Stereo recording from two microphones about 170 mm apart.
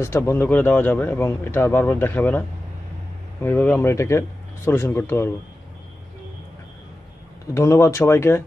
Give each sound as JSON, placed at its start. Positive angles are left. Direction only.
{"t": 0.0, "sound": "speech", "side_deg": 15}
{"t": 3.4, "sound": "speech", "side_deg": 10}
{"t": 7.5, "sound": "speech", "side_deg": 15}